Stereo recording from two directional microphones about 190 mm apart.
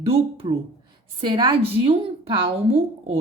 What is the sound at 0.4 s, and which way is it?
Speech, 30° right (ahead or behind).